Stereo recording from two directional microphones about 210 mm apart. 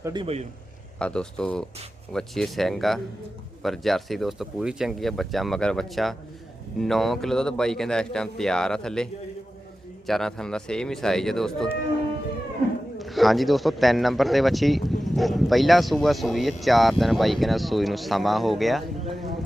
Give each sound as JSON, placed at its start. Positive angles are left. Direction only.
{"t": 0.0, "sound": "a man's voice", "side_deg": -20}
{"t": 0.9, "sound": "speech", "side_deg": 5}
{"t": 10.1, "sound": "speech", "side_deg": 0}
{"t": 13.0, "sound": "speech", "side_deg": 0}